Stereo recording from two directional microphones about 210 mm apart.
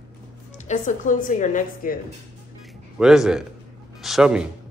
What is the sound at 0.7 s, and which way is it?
A woman's voice, 35° left (ahead or behind).